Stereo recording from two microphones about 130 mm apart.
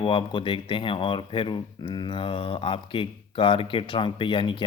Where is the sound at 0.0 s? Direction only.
40° left (ahead or behind).